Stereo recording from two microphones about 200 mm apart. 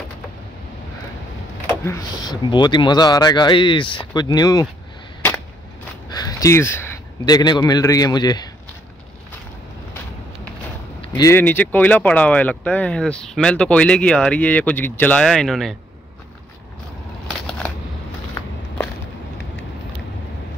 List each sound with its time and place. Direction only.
1.9 s speech: 20° left (ahead or behind)
6.0 s a man's voice: 20° left (ahead or behind)
11.0 s speech: 15° left (ahead or behind); by 15.7 s centre (ahead or behind)